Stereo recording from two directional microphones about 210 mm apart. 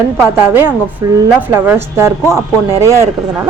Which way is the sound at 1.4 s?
10° right (ahead or behind).